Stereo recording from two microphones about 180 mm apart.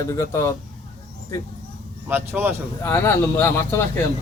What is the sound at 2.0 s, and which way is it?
Speech, 10° right (ahead or behind).